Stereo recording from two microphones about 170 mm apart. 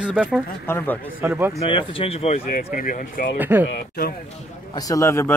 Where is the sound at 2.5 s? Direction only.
55° left (ahead or behind).